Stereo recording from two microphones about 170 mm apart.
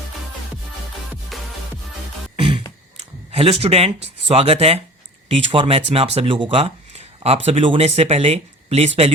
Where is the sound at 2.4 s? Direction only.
30° right (ahead or behind).